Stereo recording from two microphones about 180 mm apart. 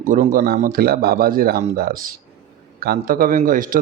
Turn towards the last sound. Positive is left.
turn(degrees=-50)  # may be behind; listen again after turning